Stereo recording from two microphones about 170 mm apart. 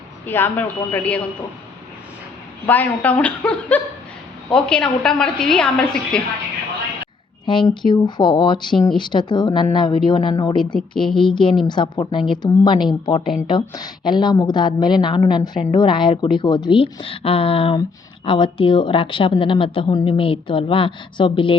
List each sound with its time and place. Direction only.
0.3 s a woman's voice: 10° left (ahead or behind)
2.6 s a woman's voice: 10° left (ahead or behind)
7.4 s a woman's voice: 30° left (ahead or behind)